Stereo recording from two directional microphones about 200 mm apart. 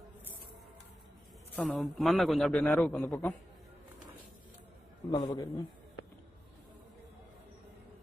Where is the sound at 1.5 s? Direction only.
5° left (ahead or behind).